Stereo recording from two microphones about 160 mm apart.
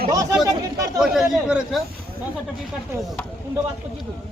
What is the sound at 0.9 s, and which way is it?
Speech, centre (ahead or behind).